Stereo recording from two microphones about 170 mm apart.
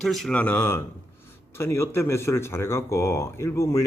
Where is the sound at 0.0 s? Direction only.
Centre (ahead or behind).